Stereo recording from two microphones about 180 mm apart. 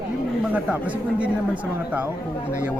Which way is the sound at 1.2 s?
10° right (ahead or behind).